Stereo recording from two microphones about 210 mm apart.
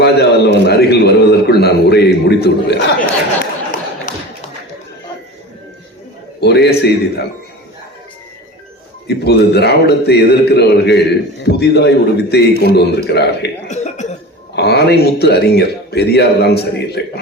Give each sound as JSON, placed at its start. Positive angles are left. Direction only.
{"t": 0.0, "sound": "a man's voice", "side_deg": 50}
{"t": 4.1, "sound": "a sound", "side_deg": 40}
{"t": 6.4, "sound": "a man's voice", "side_deg": 50}
{"t": 9.0, "sound": "a man's voice", "side_deg": 50}
{"t": 13.7, "sound": "cough", "side_deg": 35}
{"t": 14.5, "sound": "a man's voice", "side_deg": 50}